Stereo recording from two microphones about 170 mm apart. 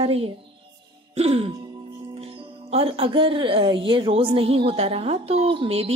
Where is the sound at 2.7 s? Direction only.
35° right (ahead or behind).